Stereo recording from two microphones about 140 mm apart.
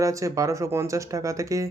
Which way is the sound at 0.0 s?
25° right (ahead or behind).